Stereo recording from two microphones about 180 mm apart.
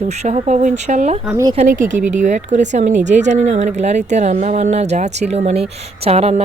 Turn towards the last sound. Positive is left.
turn(degrees=-35)  # may be behind; listen again after turning